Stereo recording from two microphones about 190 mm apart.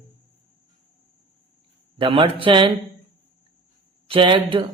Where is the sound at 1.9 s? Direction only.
25° right (ahead or behind).